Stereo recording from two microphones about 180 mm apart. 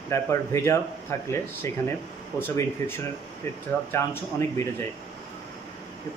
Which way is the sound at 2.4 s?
10° left (ahead or behind).